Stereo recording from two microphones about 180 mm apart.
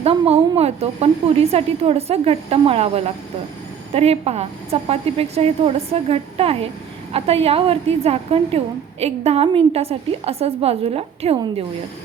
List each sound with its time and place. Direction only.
0.0 s a woman's voice: 35° right (ahead or behind)